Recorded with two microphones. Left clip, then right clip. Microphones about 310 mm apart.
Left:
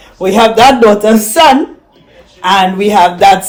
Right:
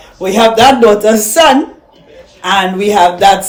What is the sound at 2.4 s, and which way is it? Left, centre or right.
Speech, left.